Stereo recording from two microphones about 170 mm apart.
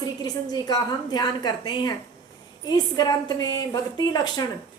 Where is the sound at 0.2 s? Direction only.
25° left (ahead or behind).